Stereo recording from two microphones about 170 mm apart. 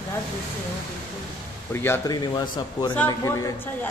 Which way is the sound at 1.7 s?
15° left (ahead or behind).